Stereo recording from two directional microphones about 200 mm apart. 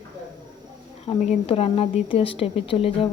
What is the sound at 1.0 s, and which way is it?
A woman's voice, 30° left (ahead or behind).